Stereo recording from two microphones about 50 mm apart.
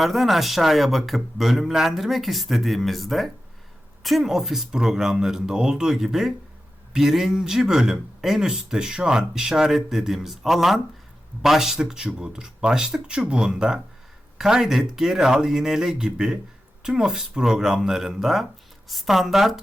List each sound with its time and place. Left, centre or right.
0.0 s speech: centre